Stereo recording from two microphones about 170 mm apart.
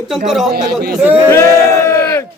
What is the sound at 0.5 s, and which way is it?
Speech, 65° right (ahead or behind).